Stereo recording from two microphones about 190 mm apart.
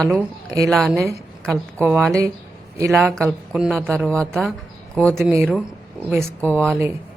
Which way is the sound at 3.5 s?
Centre (ahead or behind).